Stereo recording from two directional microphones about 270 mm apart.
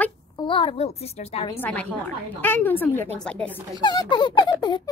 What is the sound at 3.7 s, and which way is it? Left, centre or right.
Speech, centre.